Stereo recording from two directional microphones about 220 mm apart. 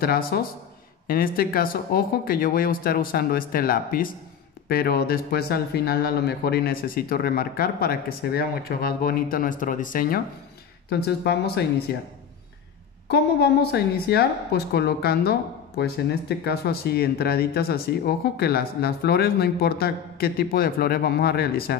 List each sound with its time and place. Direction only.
0.0 s speech: 45° left (ahead or behind)
13.1 s speech: 50° left (ahead or behind)